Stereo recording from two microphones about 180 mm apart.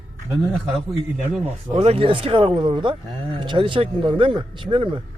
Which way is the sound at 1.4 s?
35° right (ahead or behind).